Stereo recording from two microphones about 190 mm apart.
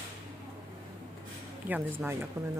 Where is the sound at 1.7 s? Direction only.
10° right (ahead or behind).